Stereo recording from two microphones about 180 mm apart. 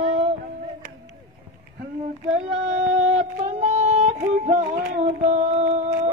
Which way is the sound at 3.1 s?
40° right (ahead or behind).